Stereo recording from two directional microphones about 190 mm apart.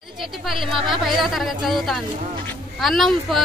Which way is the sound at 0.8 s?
Centre (ahead or behind).